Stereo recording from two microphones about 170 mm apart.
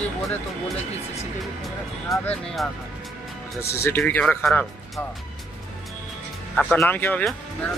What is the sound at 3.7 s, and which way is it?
Speech, 15° left (ahead or behind).